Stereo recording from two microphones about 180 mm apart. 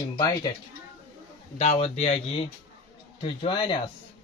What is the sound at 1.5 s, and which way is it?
Speech, 35° left (ahead or behind).